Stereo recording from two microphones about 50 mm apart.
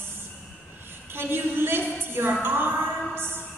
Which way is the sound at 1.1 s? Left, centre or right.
Right.